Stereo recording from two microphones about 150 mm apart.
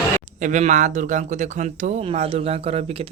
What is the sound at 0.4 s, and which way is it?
Speech, 55° right (ahead or behind).